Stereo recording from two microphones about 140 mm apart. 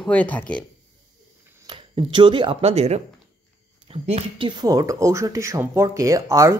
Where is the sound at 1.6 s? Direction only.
35° right (ahead or behind).